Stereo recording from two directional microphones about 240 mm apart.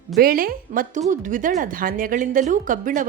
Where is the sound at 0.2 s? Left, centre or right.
Right.